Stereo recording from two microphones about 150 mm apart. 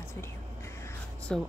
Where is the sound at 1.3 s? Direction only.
5° left (ahead or behind).